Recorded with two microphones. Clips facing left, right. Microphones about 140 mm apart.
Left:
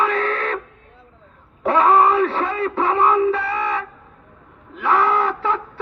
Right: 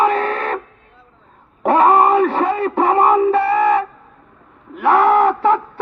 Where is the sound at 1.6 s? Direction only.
50° right (ahead or behind).